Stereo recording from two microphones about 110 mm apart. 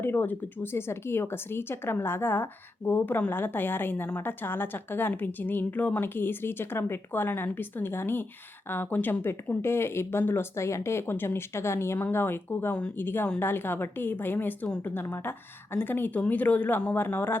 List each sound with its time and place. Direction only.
0.0 s speech: 20° left (ahead or behind)